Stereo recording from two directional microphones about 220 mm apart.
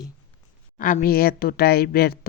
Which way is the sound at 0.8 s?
35° left (ahead or behind).